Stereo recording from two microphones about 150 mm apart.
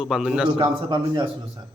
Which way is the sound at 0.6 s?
30° right (ahead or behind).